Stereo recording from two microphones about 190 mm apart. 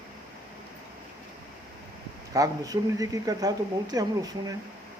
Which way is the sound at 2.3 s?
20° right (ahead or behind).